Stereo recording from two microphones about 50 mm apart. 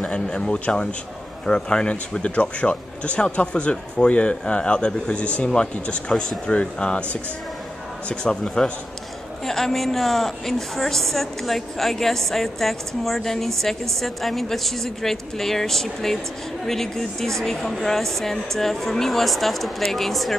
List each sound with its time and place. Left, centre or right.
0.0 s speech: centre
9.4 s a woman's voice: centre